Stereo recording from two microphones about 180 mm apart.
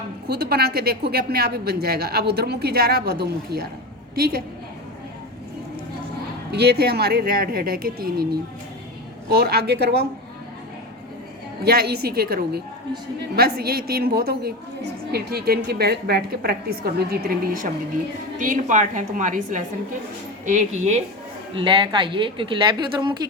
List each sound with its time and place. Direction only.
0.3 s a woman's voice: 60° right (ahead or behind)
6.5 s a woman's voice: 65° right (ahead or behind)
11.6 s a woman's voice: 60° right (ahead or behind); by 21.0 s 40° right (ahead or behind)
21.5 s a woman's voice: 30° right (ahead or behind)